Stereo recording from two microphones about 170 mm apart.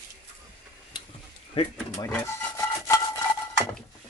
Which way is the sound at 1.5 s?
30° left (ahead or behind).